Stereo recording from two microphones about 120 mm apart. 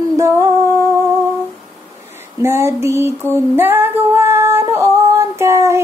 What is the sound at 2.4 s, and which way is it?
Child singing, 20° right (ahead or behind).